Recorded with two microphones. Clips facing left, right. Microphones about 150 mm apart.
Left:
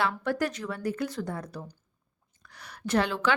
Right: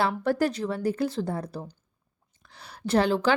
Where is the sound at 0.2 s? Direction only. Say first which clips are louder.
Right 4 dB; 35° right (ahead or behind).